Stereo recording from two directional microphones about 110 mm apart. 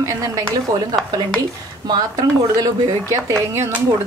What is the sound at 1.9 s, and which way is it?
A woman's voice, 35° right (ahead or behind).